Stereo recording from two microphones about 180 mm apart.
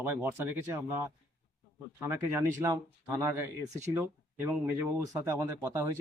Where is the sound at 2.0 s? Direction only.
10° right (ahead or behind).